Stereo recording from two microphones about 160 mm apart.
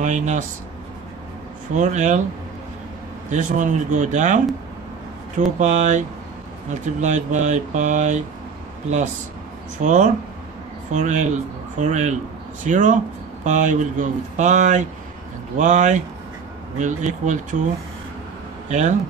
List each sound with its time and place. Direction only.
0.0 s speech: 50° right (ahead or behind)
1.8 s speech: 50° right (ahead or behind)
3.3 s speech: 50° right (ahead or behind)
5.6 s speech: 50° right (ahead or behind)
9.8 s speech: 50° right (ahead or behind)
18.7 s speech: 50° right (ahead or behind)